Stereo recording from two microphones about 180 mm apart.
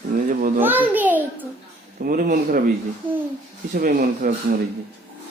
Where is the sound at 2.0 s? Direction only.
50° right (ahead or behind).